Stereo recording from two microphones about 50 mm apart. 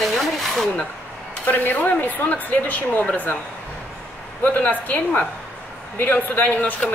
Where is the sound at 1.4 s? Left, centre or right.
Left.